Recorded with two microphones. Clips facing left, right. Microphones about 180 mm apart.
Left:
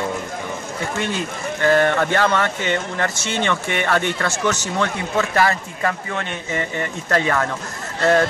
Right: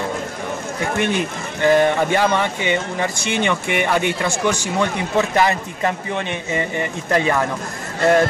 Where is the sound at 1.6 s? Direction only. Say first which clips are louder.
Right 2 dB; 15° right (ahead or behind).